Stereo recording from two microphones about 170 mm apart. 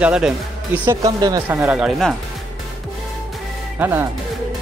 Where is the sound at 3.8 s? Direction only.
15° right (ahead or behind).